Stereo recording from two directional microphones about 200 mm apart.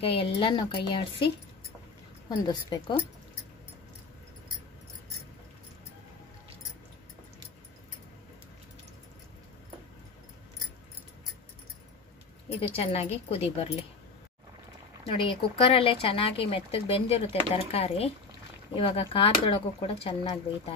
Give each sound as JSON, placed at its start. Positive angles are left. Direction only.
{"t": 0.0, "sound": "speech", "side_deg": 30}
{"t": 12.5, "sound": "speech", "side_deg": 30}
{"t": 15.0, "sound": "speech", "side_deg": 30}